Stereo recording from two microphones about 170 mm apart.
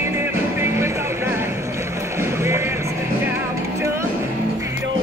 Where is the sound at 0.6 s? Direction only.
15° right (ahead or behind).